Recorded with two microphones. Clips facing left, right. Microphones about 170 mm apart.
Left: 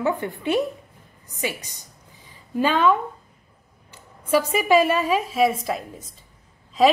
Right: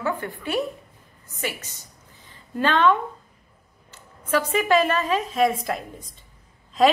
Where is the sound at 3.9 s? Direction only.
10° left (ahead or behind).